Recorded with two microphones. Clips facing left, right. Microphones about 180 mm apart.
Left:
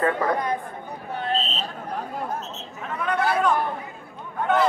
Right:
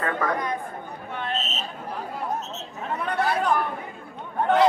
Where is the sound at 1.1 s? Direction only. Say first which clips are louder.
Left 4 dB; 35° left (ahead or behind).